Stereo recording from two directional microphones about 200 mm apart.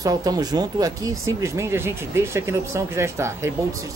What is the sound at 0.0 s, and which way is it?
Speech, 20° right (ahead or behind).